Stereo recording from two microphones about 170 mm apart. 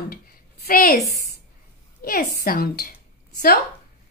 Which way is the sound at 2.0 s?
60° left (ahead or behind).